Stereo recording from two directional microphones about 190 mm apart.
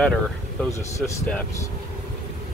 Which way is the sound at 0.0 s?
5° left (ahead or behind).